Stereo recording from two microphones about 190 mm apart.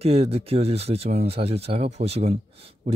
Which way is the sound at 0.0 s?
35° right (ahead or behind).